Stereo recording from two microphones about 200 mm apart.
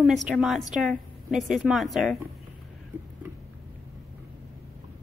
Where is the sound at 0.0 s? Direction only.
Centre (ahead or behind).